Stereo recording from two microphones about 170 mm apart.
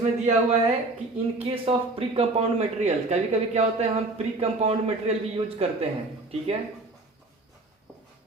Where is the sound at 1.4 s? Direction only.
35° right (ahead or behind).